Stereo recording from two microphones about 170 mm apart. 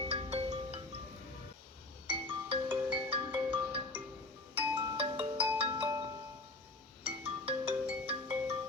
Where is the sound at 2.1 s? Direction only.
30° right (ahead or behind).